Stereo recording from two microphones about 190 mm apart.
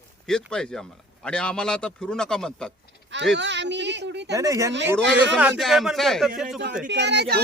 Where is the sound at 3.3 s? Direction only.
70° right (ahead or behind).